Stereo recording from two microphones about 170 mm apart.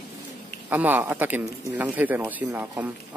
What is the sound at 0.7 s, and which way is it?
Speech, 10° right (ahead or behind).